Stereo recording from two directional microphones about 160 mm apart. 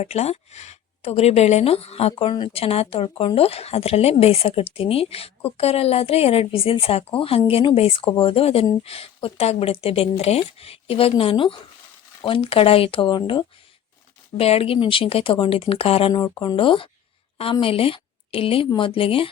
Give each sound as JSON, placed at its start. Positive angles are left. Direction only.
{"t": 0.0, "sound": "speech", "side_deg": 40}
{"t": 16.1, "sound": "a woman's voice", "side_deg": 25}